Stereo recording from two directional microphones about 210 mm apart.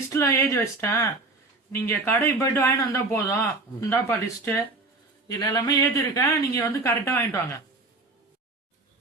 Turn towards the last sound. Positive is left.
turn(degrees=15)  # may be behind; listen again after turning